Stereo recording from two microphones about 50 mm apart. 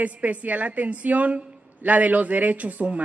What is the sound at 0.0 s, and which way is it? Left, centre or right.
A woman's voice, right.